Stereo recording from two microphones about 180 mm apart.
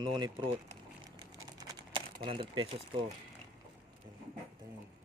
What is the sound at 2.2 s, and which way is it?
Speech, 30° right (ahead or behind).